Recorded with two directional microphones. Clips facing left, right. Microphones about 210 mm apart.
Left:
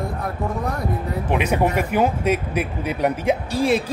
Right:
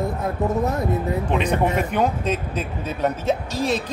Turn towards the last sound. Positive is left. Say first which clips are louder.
# left 3 dB
turn(degrees=10)  # may be behind; listen again after turning